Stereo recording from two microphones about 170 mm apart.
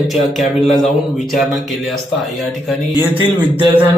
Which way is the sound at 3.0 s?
10° right (ahead or behind).